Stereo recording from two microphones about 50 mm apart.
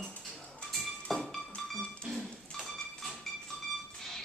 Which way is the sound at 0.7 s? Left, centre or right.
Centre.